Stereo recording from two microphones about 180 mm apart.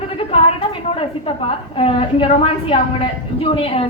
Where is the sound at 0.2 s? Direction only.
30° left (ahead or behind).